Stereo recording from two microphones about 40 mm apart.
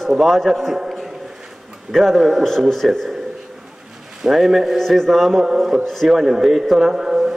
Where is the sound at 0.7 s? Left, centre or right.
Centre.